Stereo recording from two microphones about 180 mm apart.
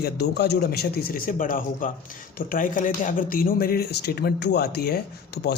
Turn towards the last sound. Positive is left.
turn(degrees=65)  # may be behind; listen again after turning